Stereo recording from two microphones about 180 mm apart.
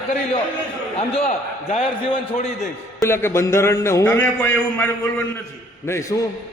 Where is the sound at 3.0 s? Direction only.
15° left (ahead or behind).